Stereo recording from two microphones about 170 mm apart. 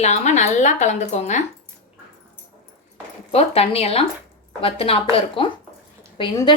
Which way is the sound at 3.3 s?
35° left (ahead or behind).